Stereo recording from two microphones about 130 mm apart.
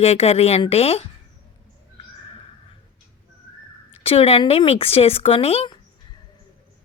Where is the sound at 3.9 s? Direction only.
50° left (ahead or behind).